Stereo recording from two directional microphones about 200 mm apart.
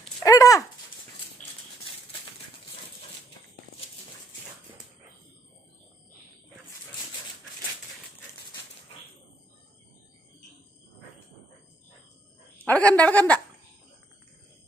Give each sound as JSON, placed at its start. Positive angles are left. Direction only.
{"t": 0.2, "sound": "dog", "side_deg": 15}
{"t": 12.6, "sound": "a sound", "side_deg": 5}
{"t": 13.0, "sound": "a woman's voice", "side_deg": 5}